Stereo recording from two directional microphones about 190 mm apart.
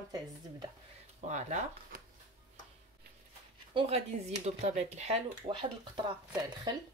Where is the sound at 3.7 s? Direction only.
30° right (ahead or behind).